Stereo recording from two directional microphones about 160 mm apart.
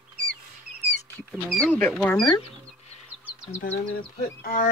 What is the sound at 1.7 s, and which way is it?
Speech, 10° left (ahead or behind).